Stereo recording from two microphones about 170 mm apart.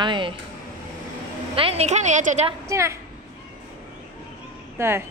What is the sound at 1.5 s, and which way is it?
Speech, 35° right (ahead or behind).